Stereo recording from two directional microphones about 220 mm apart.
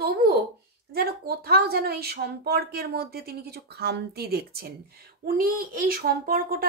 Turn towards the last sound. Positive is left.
turn(degrees=-40)  # may be behind; listen again after turning